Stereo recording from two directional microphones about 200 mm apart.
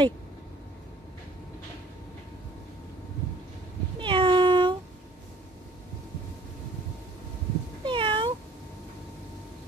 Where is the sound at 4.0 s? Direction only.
25° right (ahead or behind).